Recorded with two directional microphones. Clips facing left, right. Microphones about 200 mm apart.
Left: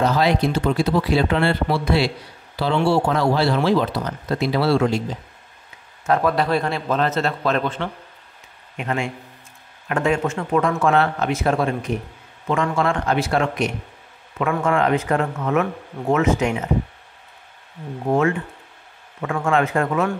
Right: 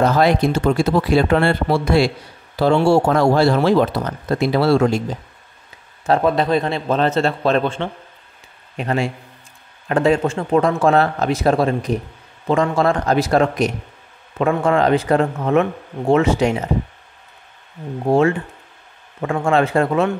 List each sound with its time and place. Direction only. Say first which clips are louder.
0.0 s speech: right 3 dB; 50° right (ahead or behind)
6.0 s a man's voice: right 3 dB; 25° right (ahead or behind)
18.0 s speech: right 4 dB; 30° right (ahead or behind)